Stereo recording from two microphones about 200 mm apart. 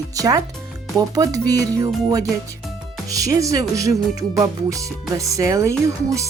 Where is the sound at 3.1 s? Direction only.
15° right (ahead or behind).